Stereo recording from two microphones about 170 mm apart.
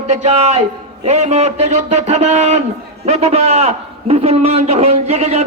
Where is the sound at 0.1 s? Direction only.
40° right (ahead or behind).